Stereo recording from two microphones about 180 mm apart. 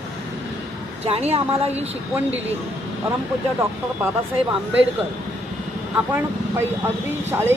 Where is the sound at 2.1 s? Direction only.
10° right (ahead or behind).